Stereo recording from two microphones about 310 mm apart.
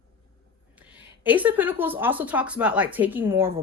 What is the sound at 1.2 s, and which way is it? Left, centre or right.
A woman's voice, centre.